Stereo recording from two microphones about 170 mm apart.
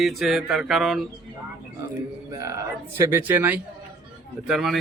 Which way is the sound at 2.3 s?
20° right (ahead or behind).